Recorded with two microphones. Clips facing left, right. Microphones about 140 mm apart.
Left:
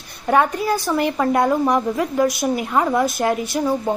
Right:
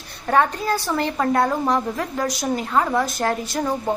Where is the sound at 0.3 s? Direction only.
15° left (ahead or behind).